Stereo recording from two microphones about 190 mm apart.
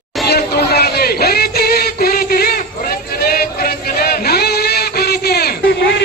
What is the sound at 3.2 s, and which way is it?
Chant, 50° left (ahead or behind).